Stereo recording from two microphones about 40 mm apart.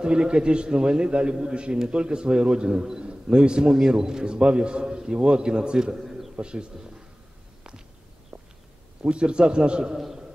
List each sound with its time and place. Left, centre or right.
0.0 s a man's voice: right
6.0 s bird: centre
6.3 s a man's voice: right
8.3 s a sound: centre
9.0 s a man's voice: right
9.9 s a man's voice: centre